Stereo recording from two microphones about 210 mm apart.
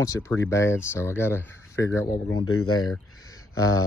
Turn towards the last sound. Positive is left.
turn(degrees=15)  # may be behind; listen again after turning